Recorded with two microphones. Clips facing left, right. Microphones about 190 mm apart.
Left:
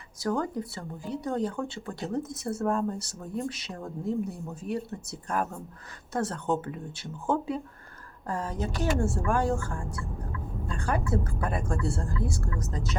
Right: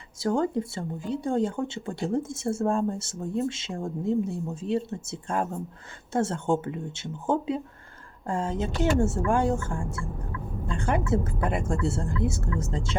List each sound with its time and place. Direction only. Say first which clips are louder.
0.2 s speech: right 4 dB; 25° right (ahead or behind)